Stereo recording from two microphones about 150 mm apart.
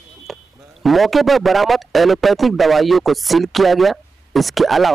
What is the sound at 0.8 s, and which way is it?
A man's voice, centre (ahead or behind).